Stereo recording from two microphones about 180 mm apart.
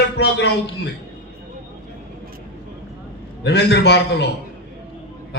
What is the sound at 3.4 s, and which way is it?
Speech, 70° left (ahead or behind).